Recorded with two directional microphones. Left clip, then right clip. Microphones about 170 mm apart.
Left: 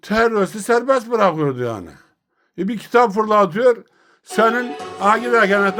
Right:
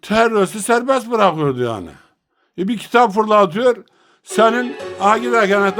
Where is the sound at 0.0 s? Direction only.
15° right (ahead or behind).